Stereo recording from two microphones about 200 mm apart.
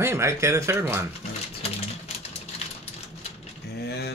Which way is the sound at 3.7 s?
55° left (ahead or behind).